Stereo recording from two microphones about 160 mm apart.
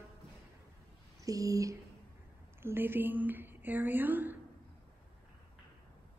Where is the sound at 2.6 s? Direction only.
15° right (ahead or behind).